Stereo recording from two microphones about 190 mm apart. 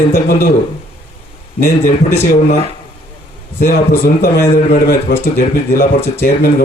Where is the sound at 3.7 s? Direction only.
50° left (ahead or behind).